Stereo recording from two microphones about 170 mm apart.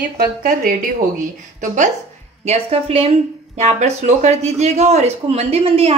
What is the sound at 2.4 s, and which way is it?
Speech, 35° right (ahead or behind).